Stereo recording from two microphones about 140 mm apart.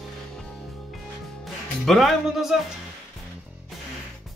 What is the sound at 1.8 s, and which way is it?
Speech, centre (ahead or behind).